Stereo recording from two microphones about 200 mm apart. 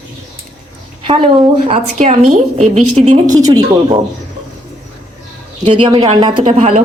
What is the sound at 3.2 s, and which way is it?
Speech, 20° right (ahead or behind).